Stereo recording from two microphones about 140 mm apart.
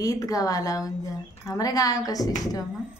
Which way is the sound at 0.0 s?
25° left (ahead or behind).